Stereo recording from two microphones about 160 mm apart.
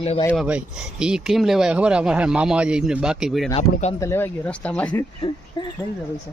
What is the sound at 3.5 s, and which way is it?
Speech, 40° left (ahead or behind).